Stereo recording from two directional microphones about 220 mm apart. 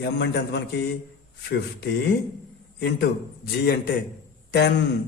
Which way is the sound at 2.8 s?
50° left (ahead or behind).